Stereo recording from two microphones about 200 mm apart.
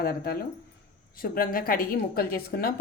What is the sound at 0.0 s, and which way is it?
A woman's voice, 50° left (ahead or behind).